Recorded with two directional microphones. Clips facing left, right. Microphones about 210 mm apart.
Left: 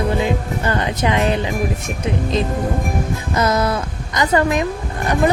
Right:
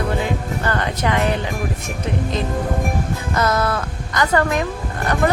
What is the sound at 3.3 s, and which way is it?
A woman's voice, 20° left (ahead or behind).